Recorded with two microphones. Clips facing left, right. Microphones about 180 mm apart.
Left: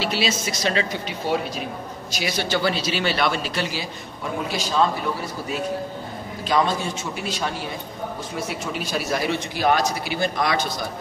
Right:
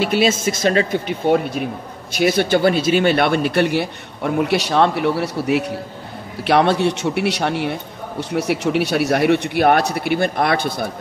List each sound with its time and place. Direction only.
0.0 s a man's voice: 50° right (ahead or behind)